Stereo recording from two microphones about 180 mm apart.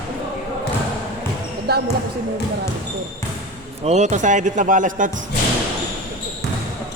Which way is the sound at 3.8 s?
40° right (ahead or behind).